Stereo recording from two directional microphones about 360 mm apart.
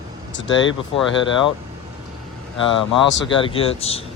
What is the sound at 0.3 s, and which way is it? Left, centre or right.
Speech, left.